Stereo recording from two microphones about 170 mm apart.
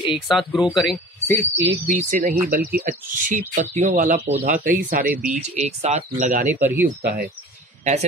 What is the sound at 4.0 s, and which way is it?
Speech, 45° right (ahead or behind).